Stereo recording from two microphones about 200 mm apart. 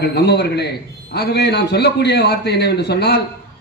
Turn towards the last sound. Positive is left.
turn(degrees=55)  # may be behind; listen again after turning